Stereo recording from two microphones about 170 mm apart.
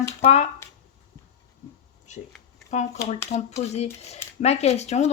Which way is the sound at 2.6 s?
45° left (ahead or behind).